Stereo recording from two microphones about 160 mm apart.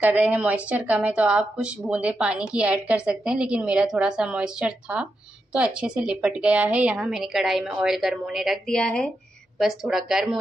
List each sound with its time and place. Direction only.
0.0 s a woman's voice: 10° right (ahead or behind)